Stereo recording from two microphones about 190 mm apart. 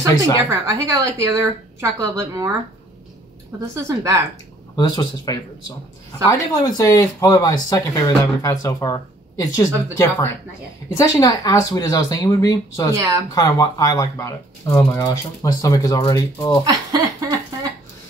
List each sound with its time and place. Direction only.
0.5 s a woman's voice: 15° right (ahead or behind)
3.7 s a woman's voice: 15° right (ahead or behind)
4.7 s speech: 20° left (ahead or behind)
12.9 s a woman's voice: 20° right (ahead or behind)
13.3 s speech: 20° left (ahead or behind)
16.6 s speech: 20° right (ahead or behind)